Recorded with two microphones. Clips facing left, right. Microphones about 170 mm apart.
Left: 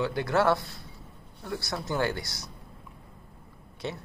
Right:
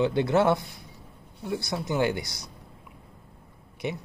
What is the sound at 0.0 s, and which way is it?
A man's voice, 20° right (ahead or behind).